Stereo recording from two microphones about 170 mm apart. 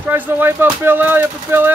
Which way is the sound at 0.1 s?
10° right (ahead or behind).